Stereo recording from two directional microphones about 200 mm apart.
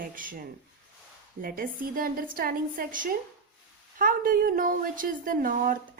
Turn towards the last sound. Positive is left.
turn(degrees=-45)  # may be behind; listen again after turning